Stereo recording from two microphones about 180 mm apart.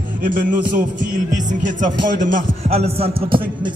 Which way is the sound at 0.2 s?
50° right (ahead or behind).